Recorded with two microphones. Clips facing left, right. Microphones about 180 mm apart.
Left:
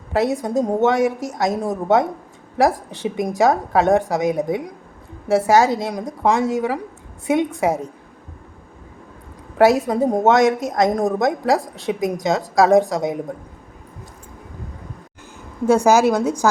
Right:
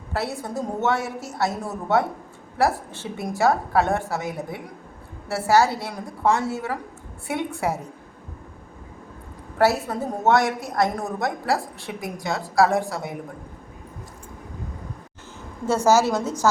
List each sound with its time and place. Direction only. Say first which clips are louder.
0.1 s a woman's voice: left 9 dB; 15° left (ahead or behind)
9.6 s a woman's voice: left 6 dB; 15° left (ahead or behind)
15.6 s a woman's voice: left 5 dB; 10° left (ahead or behind)